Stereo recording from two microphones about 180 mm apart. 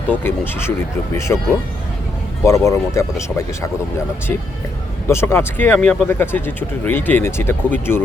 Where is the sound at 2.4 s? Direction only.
15° left (ahead or behind).